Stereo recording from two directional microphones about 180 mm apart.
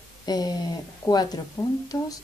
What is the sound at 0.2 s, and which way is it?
Speech, 20° left (ahead or behind).